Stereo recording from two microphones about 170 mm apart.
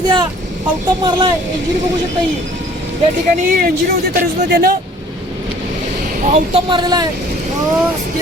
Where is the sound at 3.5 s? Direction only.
55° right (ahead or behind).